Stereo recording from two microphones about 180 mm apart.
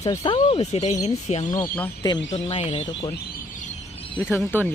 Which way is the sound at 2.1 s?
30° left (ahead or behind).